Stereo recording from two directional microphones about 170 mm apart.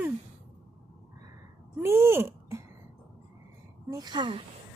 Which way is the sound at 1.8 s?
15° right (ahead or behind).